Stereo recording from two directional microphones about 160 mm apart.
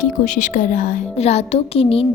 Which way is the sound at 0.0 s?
50° left (ahead or behind).